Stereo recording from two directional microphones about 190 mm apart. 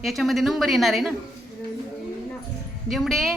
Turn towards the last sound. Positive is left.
turn(degrees=0)  # may be behind; listen again after turning